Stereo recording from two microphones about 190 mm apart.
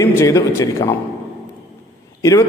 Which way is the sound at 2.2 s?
15° left (ahead or behind).